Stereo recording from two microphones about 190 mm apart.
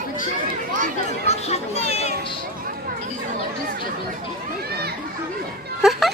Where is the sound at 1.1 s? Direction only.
35° left (ahead or behind).